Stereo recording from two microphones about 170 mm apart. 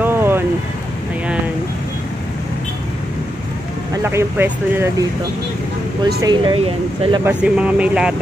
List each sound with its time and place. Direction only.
0.0 s vehicle: 15° right (ahead or behind)
3.9 s speech: 15° right (ahead or behind)
6.2 s speech: 30° right (ahead or behind)
7.2 s speech: 5° right (ahead or behind)